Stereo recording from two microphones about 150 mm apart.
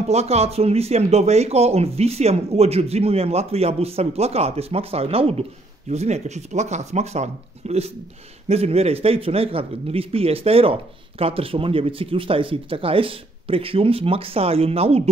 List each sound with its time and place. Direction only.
0.1 s speech: 45° right (ahead or behind)